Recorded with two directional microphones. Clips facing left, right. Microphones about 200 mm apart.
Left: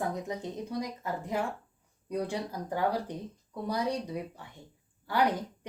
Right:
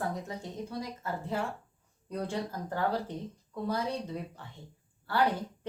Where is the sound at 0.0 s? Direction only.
20° left (ahead or behind).